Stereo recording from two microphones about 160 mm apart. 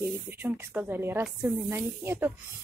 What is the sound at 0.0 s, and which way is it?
Speech, 15° right (ahead or behind).